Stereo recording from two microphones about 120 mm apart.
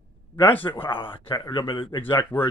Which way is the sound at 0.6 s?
45° left (ahead or behind).